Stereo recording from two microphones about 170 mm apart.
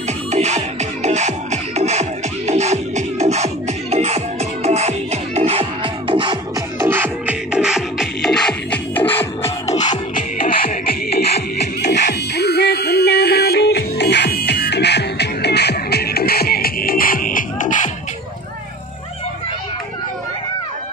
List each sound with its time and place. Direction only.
0.3 s music: 40° right (ahead or behind)
6.8 s music: 15° right (ahead or behind); by 9.5 s 10° left (ahead or behind)
10.1 s music: 55° left (ahead or behind)